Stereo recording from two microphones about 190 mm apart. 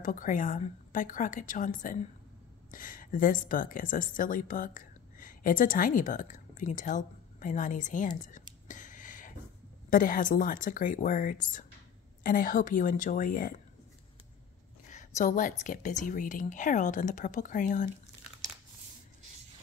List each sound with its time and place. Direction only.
0.0 s a woman's voice: 45° left (ahead or behind)
8.6 s a sound: 40° left (ahead or behind)
9.8 s speech: 45° left (ahead or behind)
14.9 s speech: 40° left (ahead or behind)